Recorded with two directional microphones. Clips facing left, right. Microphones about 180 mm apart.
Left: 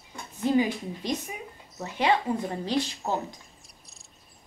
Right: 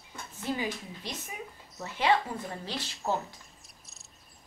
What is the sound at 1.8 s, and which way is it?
A woman's voice, 15° left (ahead or behind).